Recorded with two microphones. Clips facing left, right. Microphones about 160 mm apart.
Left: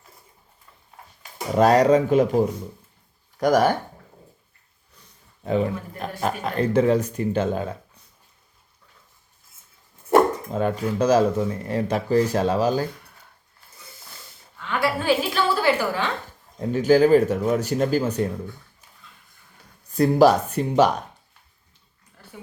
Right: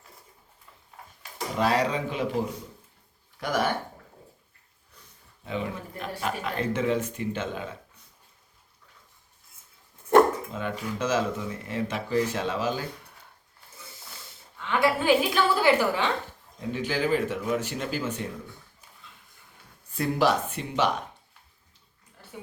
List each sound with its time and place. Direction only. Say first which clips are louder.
1.5 s speech: left 9 dB; 45° left (ahead or behind)
5.4 s speech: left 9 dB; 40° left (ahead or behind)
10.5 s speech: left 8 dB; 40° left (ahead or behind)
14.6 s a woman's voice: even; 20° right (ahead or behind)
16.6 s speech: left 12 dB; 40° left (ahead or behind)
19.9 s speech: left 8 dB; 40° left (ahead or behind)